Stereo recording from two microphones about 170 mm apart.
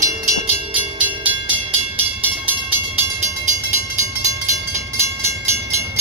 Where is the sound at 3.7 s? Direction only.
20° right (ahead or behind).